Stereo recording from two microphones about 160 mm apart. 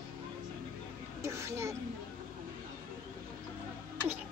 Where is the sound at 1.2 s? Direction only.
20° right (ahead or behind).